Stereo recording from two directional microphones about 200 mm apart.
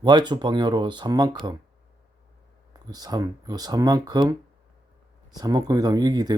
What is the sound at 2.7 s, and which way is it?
Speech, 20° right (ahead or behind).